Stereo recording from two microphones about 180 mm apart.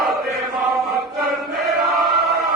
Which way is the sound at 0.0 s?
Centre (ahead or behind).